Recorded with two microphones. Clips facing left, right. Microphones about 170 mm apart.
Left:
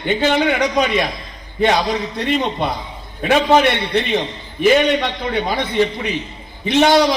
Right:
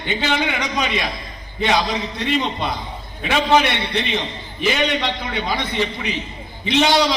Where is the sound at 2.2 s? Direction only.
50° left (ahead or behind).